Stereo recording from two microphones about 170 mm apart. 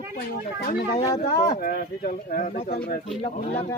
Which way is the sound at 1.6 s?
55° left (ahead or behind).